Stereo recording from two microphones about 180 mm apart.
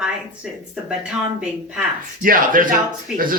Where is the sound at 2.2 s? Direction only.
50° right (ahead or behind).